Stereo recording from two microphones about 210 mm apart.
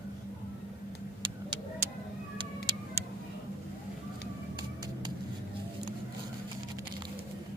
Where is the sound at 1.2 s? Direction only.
20° right (ahead or behind).